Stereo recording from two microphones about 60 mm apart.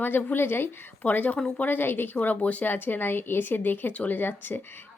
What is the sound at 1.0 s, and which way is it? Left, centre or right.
A woman's voice, left.